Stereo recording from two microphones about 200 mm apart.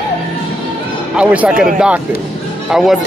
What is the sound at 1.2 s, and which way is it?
Speech, 5° right (ahead or behind).